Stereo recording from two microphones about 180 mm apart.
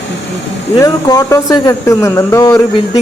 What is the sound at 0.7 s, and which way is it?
Speech, 20° left (ahead or behind).